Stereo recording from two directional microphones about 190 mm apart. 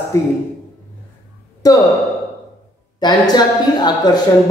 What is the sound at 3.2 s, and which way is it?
Speech, 20° left (ahead or behind).